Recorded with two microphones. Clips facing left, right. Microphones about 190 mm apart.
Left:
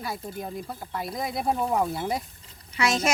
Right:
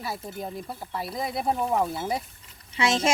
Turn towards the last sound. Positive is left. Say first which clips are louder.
# right 1 dB
turn(degrees=-25)  # may be behind; listen again after turning